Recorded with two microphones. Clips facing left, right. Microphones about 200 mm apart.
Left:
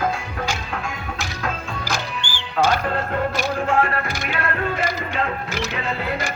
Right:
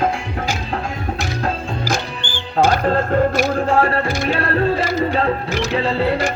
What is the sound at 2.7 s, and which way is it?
Music, 35° right (ahead or behind).